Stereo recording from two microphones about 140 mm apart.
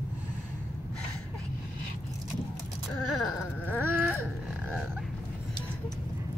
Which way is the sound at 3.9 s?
15° right (ahead or behind).